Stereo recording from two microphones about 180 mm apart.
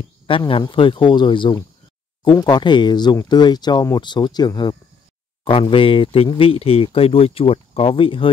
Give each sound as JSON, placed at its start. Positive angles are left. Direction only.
{"t": 0.5, "sound": "speech", "side_deg": 30}